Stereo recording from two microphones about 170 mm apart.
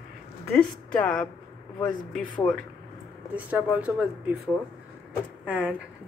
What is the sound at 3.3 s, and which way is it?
Speech, 10° right (ahead or behind).